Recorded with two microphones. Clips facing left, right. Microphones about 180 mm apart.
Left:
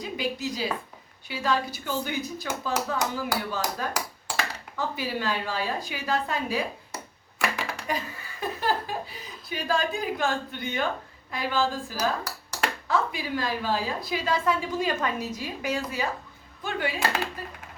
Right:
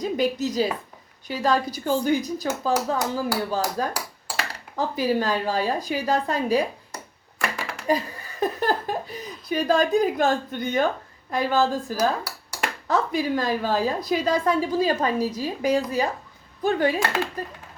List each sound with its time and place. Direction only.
0.0 s a woman's voice: 40° right (ahead or behind)
6.9 s a sound: centre (ahead or behind)
7.9 s laughter: 40° right (ahead or behind)
9.7 s a woman's voice: 45° right (ahead or behind)
12.2 s dishes: 10° right (ahead or behind)
12.9 s a woman's voice: 45° right (ahead or behind)